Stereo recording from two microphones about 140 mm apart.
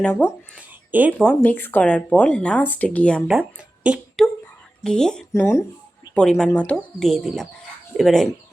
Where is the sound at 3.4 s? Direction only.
10° right (ahead or behind).